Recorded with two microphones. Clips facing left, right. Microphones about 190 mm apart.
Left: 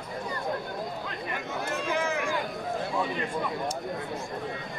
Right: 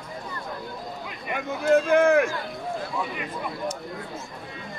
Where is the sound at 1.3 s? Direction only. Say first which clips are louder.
Right 14 dB; 55° right (ahead or behind).